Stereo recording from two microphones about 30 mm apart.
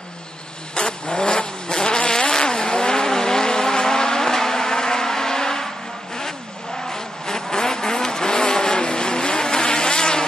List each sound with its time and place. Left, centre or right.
0.7 s vehicle: left
6.9 s vehicle: centre